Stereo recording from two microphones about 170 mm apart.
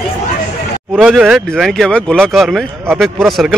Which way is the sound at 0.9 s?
5° right (ahead or behind).